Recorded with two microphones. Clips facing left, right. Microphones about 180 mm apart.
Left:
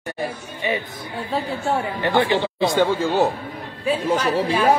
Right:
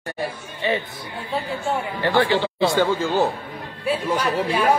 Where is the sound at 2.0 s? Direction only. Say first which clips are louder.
Right 1 dB; 20° left (ahead or behind).